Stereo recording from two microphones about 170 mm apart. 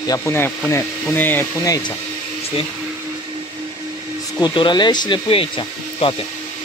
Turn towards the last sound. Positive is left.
turn(degrees=30)  # may be behind; listen again after turning